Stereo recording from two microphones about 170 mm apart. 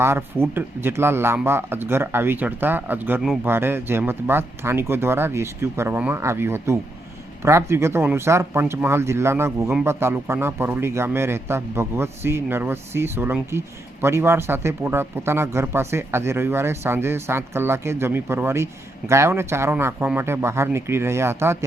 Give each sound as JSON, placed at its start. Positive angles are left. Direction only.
{"t": 0.0, "sound": "speech", "side_deg": -15}